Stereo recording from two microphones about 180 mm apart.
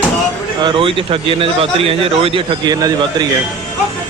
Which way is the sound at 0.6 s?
30° right (ahead or behind).